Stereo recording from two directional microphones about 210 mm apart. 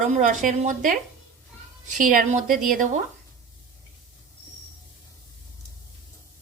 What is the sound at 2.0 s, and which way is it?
Speech, 40° right (ahead or behind).